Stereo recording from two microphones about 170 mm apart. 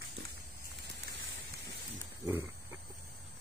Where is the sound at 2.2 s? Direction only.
15° right (ahead or behind).